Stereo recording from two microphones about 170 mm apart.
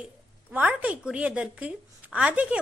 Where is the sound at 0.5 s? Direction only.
10° right (ahead or behind).